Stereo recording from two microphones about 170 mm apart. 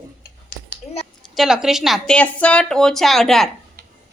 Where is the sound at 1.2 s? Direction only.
Centre (ahead or behind).